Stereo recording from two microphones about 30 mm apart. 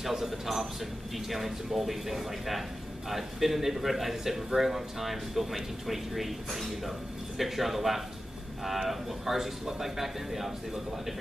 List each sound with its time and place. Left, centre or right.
0.0 s a man's voice: centre